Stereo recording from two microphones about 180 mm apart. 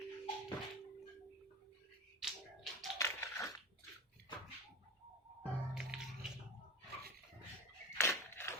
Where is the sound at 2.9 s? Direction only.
15° left (ahead or behind).